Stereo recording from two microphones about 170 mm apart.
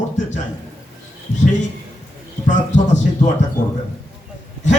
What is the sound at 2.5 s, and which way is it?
Speech, 45° left (ahead or behind).